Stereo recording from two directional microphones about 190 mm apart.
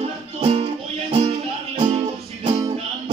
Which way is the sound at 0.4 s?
30° right (ahead or behind).